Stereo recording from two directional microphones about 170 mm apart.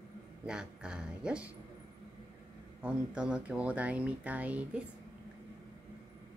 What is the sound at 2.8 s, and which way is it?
Speech, 5° right (ahead or behind).